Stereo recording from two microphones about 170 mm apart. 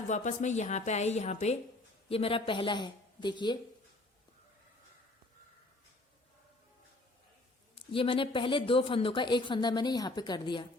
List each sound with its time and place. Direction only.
0.1 s a woman's voice: 45° left (ahead or behind); by 3.6 s 25° left (ahead or behind)
7.8 s speech: 30° left (ahead or behind)